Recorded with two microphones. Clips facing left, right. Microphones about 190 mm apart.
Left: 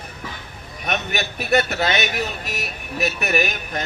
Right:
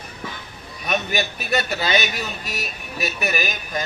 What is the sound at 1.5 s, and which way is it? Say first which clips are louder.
Speech: left 5 dB; 60° left (ahead or behind).